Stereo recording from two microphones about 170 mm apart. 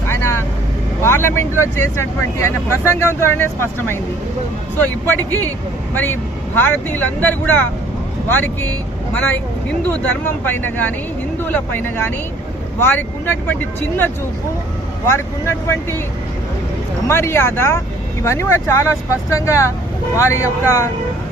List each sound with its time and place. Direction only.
0.1 s vehicle: 15° left (ahead or behind)
1.0 s speech: 15° left (ahead or behind)
9.9 s speech: 10° left (ahead or behind)
17.1 s speech: 15° left (ahead or behind)